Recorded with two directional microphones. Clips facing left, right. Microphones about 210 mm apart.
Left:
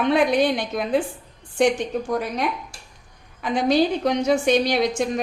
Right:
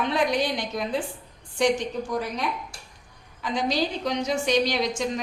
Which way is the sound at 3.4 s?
55° left (ahead or behind).